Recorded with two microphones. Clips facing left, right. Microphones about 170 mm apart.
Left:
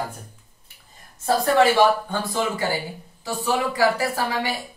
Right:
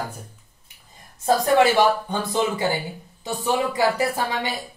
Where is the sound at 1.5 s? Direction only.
15° right (ahead or behind).